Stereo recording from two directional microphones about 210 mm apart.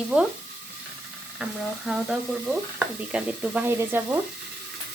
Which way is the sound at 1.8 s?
5° right (ahead or behind).